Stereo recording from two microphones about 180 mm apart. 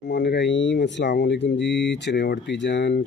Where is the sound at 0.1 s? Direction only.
70° left (ahead or behind).